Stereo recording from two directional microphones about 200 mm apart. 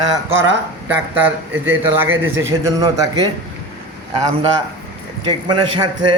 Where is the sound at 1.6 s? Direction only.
10° right (ahead or behind).